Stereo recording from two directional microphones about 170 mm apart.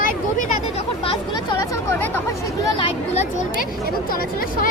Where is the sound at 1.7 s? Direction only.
10° left (ahead or behind).